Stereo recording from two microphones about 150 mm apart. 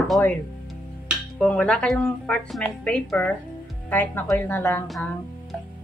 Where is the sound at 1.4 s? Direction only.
10° left (ahead or behind).